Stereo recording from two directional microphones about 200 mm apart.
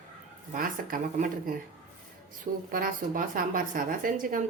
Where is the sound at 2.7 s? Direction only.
45° right (ahead or behind).